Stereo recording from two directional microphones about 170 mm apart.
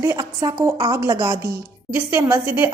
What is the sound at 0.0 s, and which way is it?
A woman's voice, 20° right (ahead or behind).